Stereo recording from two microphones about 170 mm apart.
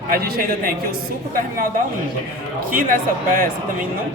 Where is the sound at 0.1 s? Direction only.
60° right (ahead or behind).